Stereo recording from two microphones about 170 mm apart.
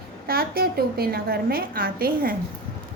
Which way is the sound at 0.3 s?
65° right (ahead or behind).